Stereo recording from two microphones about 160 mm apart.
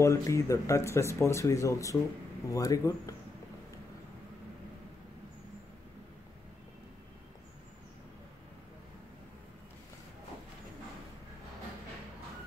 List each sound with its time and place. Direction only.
0.0 s speech: 20° left (ahead or behind)